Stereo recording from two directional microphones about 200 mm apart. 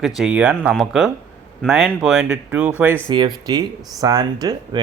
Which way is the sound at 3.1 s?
20° right (ahead or behind).